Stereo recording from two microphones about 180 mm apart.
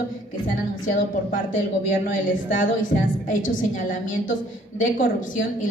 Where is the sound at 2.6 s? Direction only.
45° left (ahead or behind).